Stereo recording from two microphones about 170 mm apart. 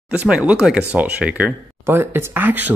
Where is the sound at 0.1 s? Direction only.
5° right (ahead or behind).